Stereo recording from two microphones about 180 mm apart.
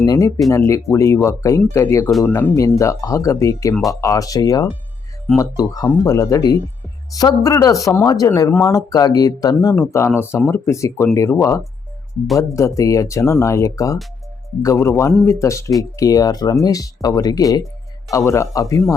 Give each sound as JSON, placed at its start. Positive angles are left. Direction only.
{"t": 0.0, "sound": "speech", "side_deg": 20}